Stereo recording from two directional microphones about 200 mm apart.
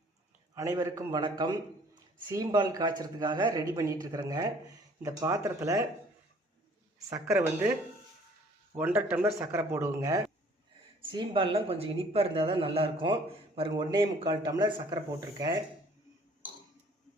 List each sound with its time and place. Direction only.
0.5 s a man's voice: 15° right (ahead or behind)
7.1 s a man's voice: 15° right (ahead or behind)
8.8 s a man's voice: 10° right (ahead or behind)